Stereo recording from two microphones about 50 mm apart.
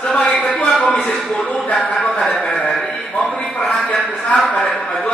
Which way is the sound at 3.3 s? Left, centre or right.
Left.